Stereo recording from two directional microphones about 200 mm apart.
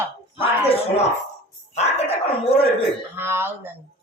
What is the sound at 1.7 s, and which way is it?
Music, 30° left (ahead or behind).